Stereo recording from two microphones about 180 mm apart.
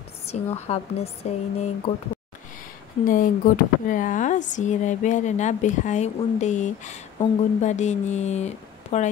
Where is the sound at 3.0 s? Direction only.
50° left (ahead or behind).